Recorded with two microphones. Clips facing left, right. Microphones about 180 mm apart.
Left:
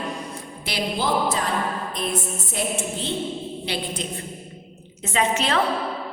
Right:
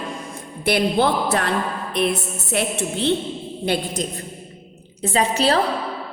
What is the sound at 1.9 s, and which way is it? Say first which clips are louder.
A woman's voice: right 5 dB; 70° right (ahead or behind).